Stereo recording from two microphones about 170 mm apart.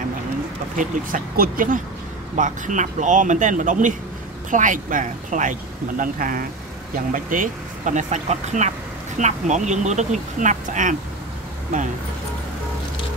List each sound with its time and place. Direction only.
0.7 s speech: 55° right (ahead or behind)